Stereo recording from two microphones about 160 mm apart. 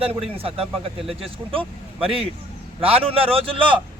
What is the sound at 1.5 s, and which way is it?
Speech, 35° right (ahead or behind).